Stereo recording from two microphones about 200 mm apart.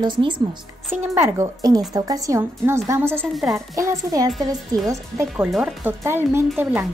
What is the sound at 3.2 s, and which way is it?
Speech, centre (ahead or behind).